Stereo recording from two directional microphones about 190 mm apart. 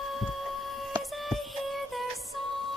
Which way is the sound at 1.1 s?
Centre (ahead or behind).